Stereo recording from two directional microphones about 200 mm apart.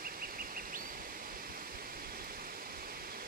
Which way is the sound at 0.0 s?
45° right (ahead or behind).